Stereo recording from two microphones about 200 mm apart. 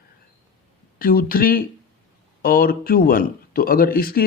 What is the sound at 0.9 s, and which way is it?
A man's voice, 45° left (ahead or behind).